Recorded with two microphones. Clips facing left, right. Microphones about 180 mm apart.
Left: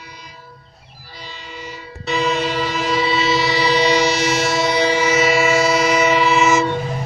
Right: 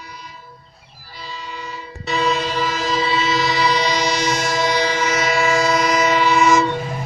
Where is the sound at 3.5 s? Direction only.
25° left (ahead or behind).